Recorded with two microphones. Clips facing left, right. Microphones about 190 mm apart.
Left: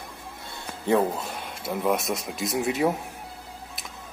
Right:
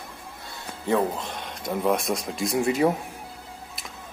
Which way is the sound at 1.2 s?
10° left (ahead or behind).